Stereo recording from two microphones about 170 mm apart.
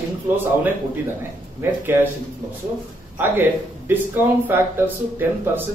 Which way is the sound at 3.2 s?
10° right (ahead or behind).